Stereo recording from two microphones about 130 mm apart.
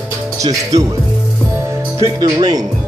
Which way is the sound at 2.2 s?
30° right (ahead or behind).